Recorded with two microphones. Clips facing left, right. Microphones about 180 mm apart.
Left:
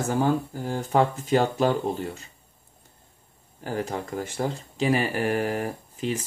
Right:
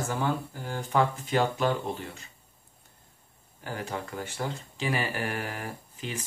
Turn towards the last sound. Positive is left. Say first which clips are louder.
# left 8 dB
turn(degrees=40)  # may be behind; listen again after turning